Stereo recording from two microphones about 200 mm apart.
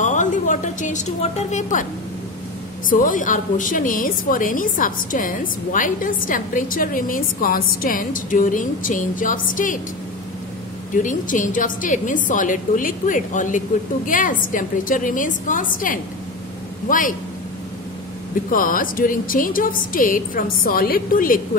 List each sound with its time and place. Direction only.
0.0 s a sound: 40° left (ahead or behind)
2.9 s a woman's voice: 40° left (ahead or behind)
11.0 s a woman's voice: 40° left (ahead or behind)
18.5 s a woman's voice: 45° left (ahead or behind)